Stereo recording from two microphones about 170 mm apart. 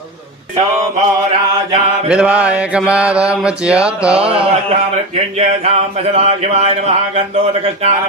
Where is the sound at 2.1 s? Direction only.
5° right (ahead or behind).